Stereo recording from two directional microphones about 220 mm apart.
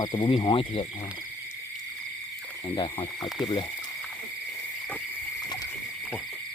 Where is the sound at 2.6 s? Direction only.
20° left (ahead or behind).